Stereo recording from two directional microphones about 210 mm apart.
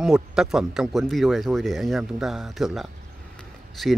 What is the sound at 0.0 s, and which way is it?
Speech, centre (ahead or behind).